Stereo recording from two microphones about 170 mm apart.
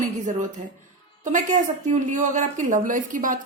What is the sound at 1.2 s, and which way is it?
A woman's voice, 45° right (ahead or behind).